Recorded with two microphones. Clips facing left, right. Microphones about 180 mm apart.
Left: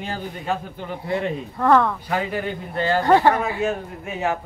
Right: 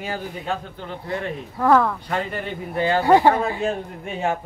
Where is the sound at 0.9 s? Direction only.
15° left (ahead or behind).